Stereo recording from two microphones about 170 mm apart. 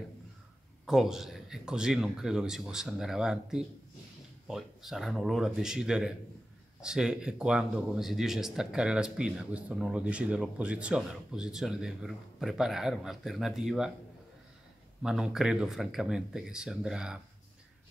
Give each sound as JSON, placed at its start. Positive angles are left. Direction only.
{"t": 0.8, "sound": "speech", "side_deg": 0}
{"t": 15.0, "sound": "speech", "side_deg": -5}